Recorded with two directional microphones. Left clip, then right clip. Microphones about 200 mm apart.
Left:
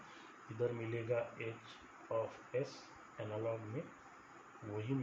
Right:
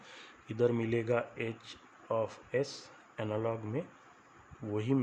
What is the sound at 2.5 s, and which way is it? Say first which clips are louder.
Speech: right 7 dB; 65° right (ahead or behind).